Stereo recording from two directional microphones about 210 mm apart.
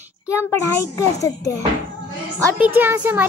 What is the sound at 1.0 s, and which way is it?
Speech, 15° left (ahead or behind).